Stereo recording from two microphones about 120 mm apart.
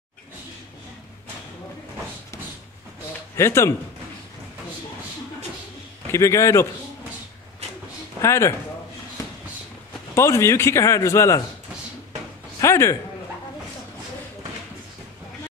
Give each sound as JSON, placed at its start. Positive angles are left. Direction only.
{"t": 3.3, "sound": "a man's voice", "side_deg": 20}
{"t": 6.1, "sound": "a man's voice", "side_deg": 25}
{"t": 8.2, "sound": "a man's voice", "side_deg": 25}
{"t": 10.1, "sound": "a man's voice", "side_deg": 25}
{"t": 12.5, "sound": "a man's voice", "side_deg": 25}